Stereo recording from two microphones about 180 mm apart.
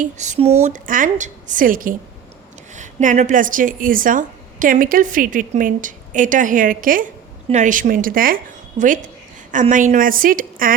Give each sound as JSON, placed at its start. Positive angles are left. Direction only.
{"t": 0.0, "sound": "a woman's voice", "side_deg": -40}